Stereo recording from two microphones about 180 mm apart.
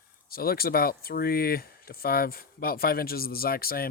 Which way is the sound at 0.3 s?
55° left (ahead or behind).